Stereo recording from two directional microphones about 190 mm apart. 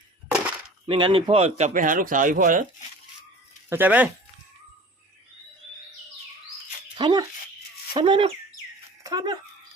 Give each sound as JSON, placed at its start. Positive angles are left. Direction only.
{"t": 0.9, "sound": "speech", "side_deg": -25}
{"t": 3.7, "sound": "speech", "side_deg": -10}
{"t": 6.9, "sound": "speech", "side_deg": -25}